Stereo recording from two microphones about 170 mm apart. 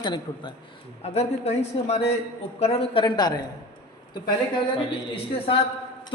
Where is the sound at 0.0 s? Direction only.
25° left (ahead or behind).